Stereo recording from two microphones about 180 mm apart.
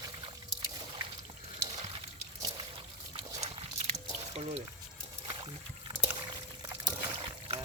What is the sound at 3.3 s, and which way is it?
Dog, 35° right (ahead or behind).